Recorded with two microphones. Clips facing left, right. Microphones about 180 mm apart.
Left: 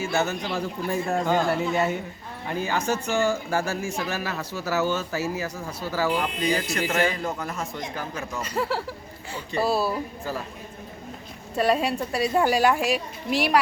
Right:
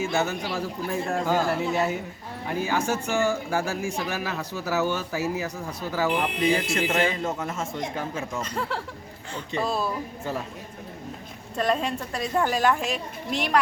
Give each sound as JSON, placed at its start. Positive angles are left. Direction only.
{"t": 0.0, "sound": "a man's voice", "side_deg": -10}
{"t": 6.4, "sound": "speech", "side_deg": -25}
{"t": 8.4, "sound": "a woman's voice", "side_deg": 5}
{"t": 11.5, "sound": "a woman's voice", "side_deg": 10}